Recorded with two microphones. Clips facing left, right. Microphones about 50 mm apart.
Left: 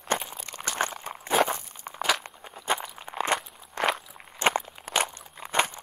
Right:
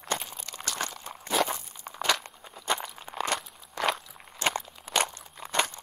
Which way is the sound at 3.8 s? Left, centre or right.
Left.